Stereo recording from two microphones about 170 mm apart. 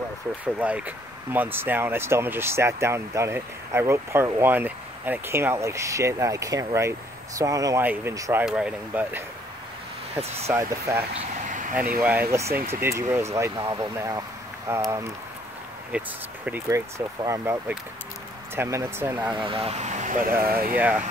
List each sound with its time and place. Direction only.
0.6 s speech: 10° right (ahead or behind)
8.5 s speech: 5° right (ahead or behind)
10.5 s speech: 20° right (ahead or behind)
11.1 s a sound: 50° right (ahead or behind)
12.0 s speech: 10° right (ahead or behind)
15.9 s speech: 10° right (ahead or behind)
19.3 s speech: 30° right (ahead or behind); by 20.3 s 50° right (ahead or behind)
20.4 s speech: 60° right (ahead or behind)
20.7 s speech: 10° right (ahead or behind)